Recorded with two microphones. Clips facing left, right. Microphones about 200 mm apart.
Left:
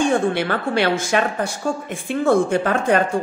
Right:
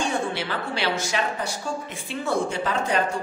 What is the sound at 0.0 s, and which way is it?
A woman's voice, 55° left (ahead or behind).